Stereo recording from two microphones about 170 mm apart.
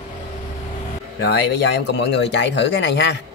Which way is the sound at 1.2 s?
90° left.